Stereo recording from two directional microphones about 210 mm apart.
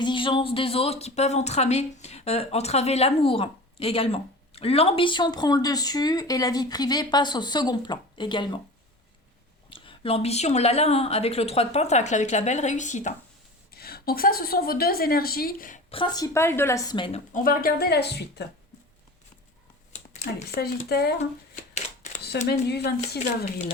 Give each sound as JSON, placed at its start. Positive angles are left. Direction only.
{"t": 0.0, "sound": "speech", "side_deg": 25}
{"t": 9.7, "sound": "a woman's voice", "side_deg": 25}
{"t": 13.7, "sound": "a woman's voice", "side_deg": 45}
{"t": 15.9, "sound": "speech", "side_deg": 20}
{"t": 20.5, "sound": "a woman's voice", "side_deg": 50}